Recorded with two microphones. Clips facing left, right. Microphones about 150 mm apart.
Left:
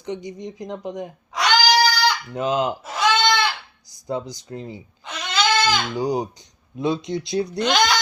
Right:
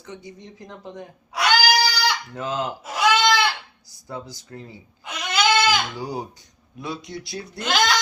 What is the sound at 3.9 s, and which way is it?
Speech, 20° left (ahead or behind).